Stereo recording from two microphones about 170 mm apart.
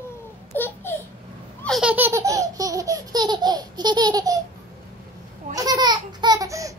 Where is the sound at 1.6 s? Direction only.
Centre (ahead or behind); by 4.4 s 20° right (ahead or behind).